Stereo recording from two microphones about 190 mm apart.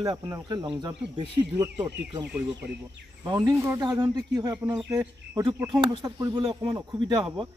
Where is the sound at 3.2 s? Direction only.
20° right (ahead or behind).